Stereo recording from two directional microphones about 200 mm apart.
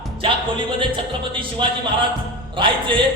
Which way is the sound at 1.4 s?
25° right (ahead or behind).